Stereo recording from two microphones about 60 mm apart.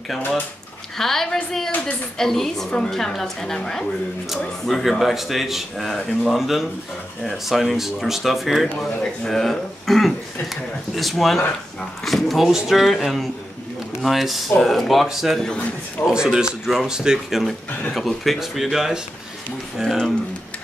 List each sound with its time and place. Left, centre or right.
0.9 s a man's voice: centre
15.4 s a woman's voice: centre
16.1 s speech: centre